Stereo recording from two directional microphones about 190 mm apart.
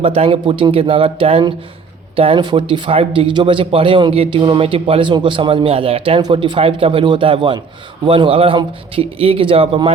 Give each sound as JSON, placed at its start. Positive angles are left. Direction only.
{"t": 0.0, "sound": "speech", "side_deg": -30}